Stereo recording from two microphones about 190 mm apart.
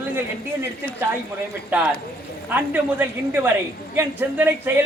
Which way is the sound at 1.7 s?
10° right (ahead or behind).